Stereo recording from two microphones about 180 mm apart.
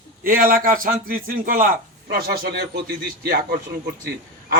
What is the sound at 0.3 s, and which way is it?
A man's voice, 50° right (ahead or behind).